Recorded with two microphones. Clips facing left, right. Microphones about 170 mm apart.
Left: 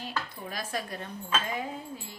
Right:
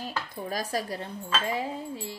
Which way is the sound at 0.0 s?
40° right (ahead or behind).